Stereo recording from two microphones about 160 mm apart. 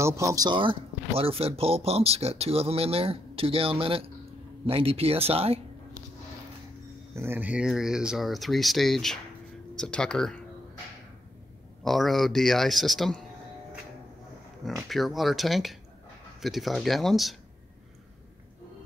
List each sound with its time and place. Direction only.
0.0 s speech: 20° right (ahead or behind); by 5.6 s 40° right (ahead or behind)
7.2 s speech: 10° right (ahead or behind); by 10.4 s 5° left (ahead or behind)
11.8 s speech: centre (ahead or behind)
14.6 s speech: centre (ahead or behind)